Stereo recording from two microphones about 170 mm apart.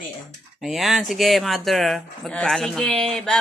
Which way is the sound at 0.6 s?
Centre (ahead or behind).